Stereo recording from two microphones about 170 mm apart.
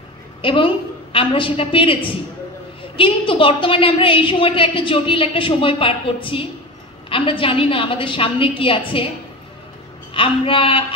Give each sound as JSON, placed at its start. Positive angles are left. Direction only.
{"t": 0.4, "sound": "a woman's voice", "side_deg": 30}
{"t": 10.1, "sound": "a woman's voice", "side_deg": 30}